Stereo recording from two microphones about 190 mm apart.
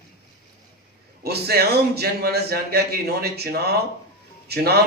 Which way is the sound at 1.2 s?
55° right (ahead or behind).